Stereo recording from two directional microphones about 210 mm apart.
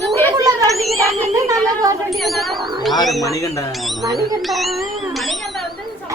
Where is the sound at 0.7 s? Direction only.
Centre (ahead or behind).